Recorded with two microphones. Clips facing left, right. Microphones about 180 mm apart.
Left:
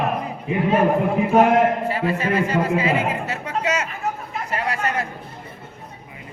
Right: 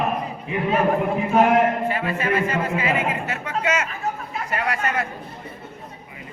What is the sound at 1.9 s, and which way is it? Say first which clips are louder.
A man's voice: left 1 dB; 35° left (ahead or behind).